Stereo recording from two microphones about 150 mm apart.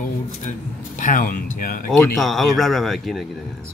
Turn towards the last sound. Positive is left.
turn(degrees=0)  # may be behind; listen again after turning